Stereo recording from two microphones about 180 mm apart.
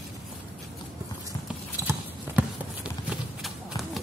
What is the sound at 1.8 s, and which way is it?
Clip-clop, 5° right (ahead or behind).